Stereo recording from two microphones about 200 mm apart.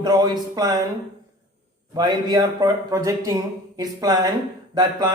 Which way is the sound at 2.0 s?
20° right (ahead or behind).